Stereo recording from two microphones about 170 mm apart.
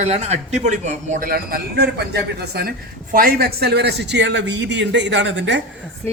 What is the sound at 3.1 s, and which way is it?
A man's voice, 60° right (ahead or behind).